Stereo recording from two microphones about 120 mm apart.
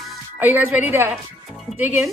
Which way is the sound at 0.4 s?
15° right (ahead or behind).